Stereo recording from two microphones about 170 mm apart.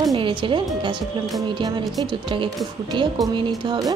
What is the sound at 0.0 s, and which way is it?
A woman's voice, 25° right (ahead or behind).